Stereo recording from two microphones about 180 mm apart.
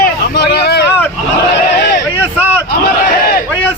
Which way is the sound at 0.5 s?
65° left (ahead or behind).